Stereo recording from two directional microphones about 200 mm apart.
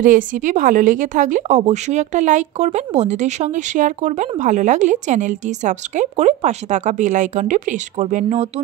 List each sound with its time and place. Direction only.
0.0 s speech: 40° right (ahead or behind)